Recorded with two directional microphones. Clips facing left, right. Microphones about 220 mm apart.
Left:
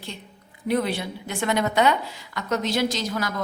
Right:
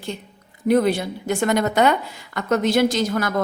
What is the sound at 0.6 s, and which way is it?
A woman's voice, 45° right (ahead or behind).